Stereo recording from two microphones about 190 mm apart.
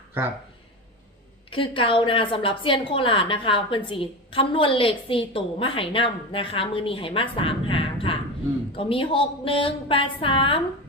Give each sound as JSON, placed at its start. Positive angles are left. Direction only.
{"t": 0.2, "sound": "speech", "side_deg": -10}
{"t": 1.5, "sound": "a woman's voice", "side_deg": 25}